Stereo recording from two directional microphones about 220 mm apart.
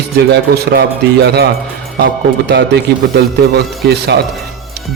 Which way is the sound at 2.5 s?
50° right (ahead or behind).